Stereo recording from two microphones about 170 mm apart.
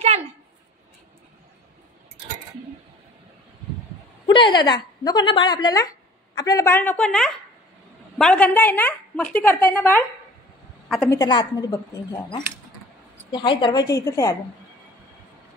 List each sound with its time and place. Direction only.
4.3 s a woman's voice: 25° left (ahead or behind); by 10.0 s 10° left (ahead or behind)
11.1 s a woman's voice: 25° left (ahead or behind)
13.3 s a woman's voice: 25° left (ahead or behind)